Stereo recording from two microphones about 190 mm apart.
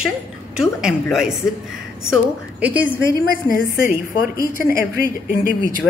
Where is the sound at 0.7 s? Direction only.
Centre (ahead or behind).